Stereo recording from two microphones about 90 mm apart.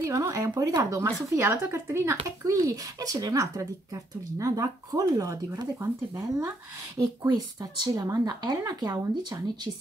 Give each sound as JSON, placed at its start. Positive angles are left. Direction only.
{"t": 0.0, "sound": "a child's voice", "side_deg": -35}
{"t": 7.0, "sound": "speech", "side_deg": -50}